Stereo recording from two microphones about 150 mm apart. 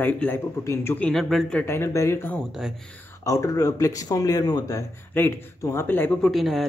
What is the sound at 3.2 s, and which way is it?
Mantra, 25° left (ahead or behind).